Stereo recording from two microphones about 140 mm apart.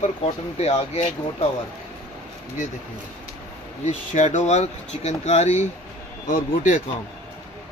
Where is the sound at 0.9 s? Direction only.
45° left (ahead or behind).